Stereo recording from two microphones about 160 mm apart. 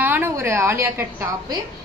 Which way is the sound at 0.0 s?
15° right (ahead or behind).